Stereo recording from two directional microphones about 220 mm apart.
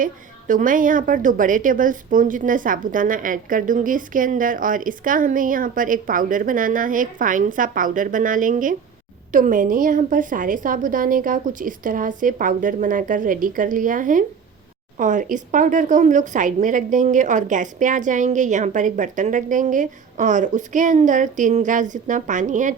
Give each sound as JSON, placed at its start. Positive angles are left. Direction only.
{"t": 0.0, "sound": "a woman's voice", "side_deg": -35}